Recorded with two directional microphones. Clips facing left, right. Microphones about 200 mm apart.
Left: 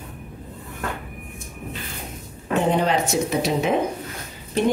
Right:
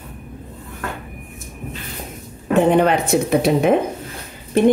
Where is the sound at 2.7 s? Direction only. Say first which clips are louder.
Right 5 dB; 55° right (ahead or behind).